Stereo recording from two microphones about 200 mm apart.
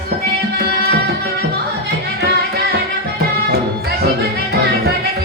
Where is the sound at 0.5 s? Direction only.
50° right (ahead or behind).